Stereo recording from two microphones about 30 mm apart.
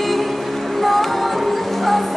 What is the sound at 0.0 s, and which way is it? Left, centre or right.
Music, centre.